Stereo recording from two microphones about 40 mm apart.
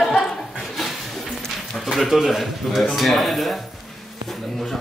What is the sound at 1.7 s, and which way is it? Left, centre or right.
Speech, centre.